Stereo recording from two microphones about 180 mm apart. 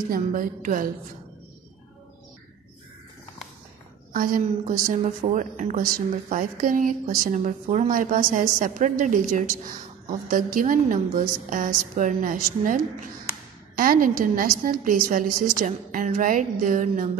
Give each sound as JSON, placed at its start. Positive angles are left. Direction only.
{"t": 0.1, "sound": "a woman's voice", "side_deg": -50}
{"t": 4.1, "sound": "a woman's voice", "side_deg": -50}